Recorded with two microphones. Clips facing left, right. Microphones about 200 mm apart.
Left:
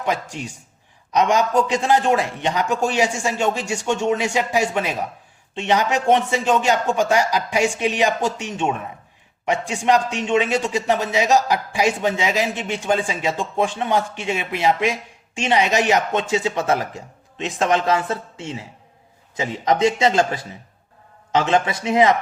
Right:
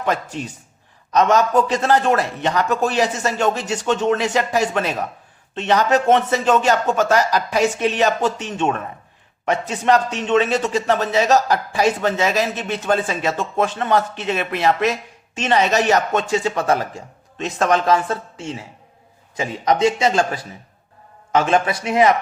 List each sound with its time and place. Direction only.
0.0 s a man's voice: 10° left (ahead or behind)